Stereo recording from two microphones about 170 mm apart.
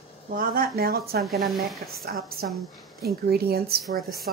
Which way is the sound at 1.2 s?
Centre (ahead or behind).